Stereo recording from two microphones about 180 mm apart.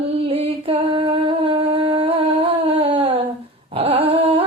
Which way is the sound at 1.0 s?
30° right (ahead or behind).